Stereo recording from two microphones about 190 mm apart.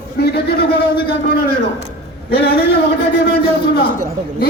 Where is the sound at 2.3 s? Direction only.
55° left (ahead or behind).